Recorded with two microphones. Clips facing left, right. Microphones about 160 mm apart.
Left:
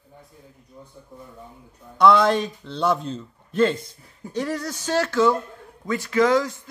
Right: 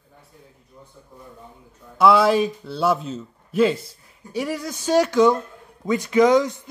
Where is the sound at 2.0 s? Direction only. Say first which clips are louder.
Right 1 dB; 5° right (ahead or behind).